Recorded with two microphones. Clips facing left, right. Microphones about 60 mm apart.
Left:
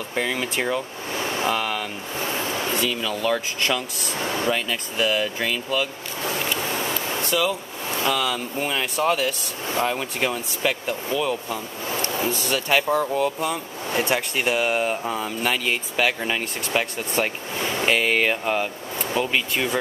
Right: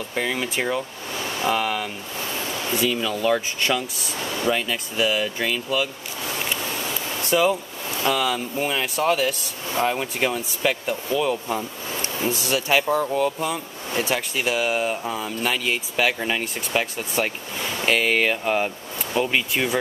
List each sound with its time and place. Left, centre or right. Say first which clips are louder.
0.1 s speech: even; centre
7.2 s speech: right 4 dB; centre
8.0 s speech: right 2 dB; centre
11.4 s speech: right 2 dB; centre